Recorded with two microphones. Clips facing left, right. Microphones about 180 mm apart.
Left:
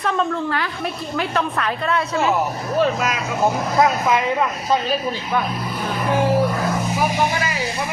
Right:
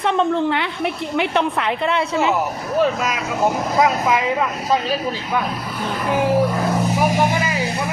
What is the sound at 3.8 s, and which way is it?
Speech, 10° right (ahead or behind).